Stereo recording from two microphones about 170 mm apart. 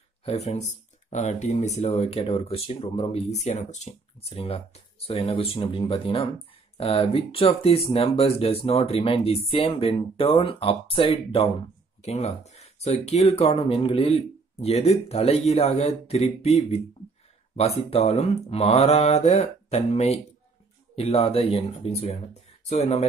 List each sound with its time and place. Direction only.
0.2 s speech: 40° left (ahead or behind)